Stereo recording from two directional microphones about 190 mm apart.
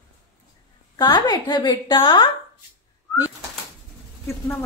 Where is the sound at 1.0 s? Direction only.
25° left (ahead or behind).